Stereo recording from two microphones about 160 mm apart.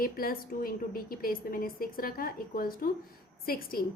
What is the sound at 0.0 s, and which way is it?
A woman's voice, 65° left (ahead or behind).